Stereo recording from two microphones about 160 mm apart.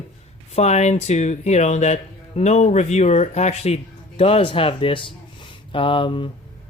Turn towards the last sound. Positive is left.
turn(degrees=30)  # may be behind; listen again after turning